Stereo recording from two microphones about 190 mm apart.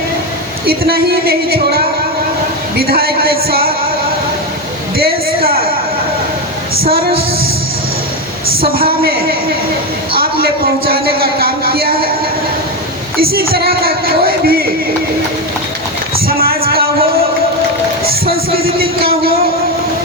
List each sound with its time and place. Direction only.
0.7 s music: 55° right (ahead or behind)
4.9 s a sound: 50° right (ahead or behind)
6.8 s music: 50° right (ahead or behind)
7.1 s music: 30° right (ahead or behind)
8.7 s music: 50° right (ahead or behind)
13.1 s music: 50° right (ahead or behind)
16.2 s music: 50° right (ahead or behind)